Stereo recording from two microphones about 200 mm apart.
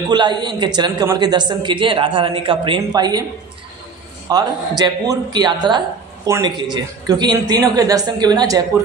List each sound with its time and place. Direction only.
0.1 s speech: 20° right (ahead or behind)
4.3 s a woman's voice: 20° right (ahead or behind)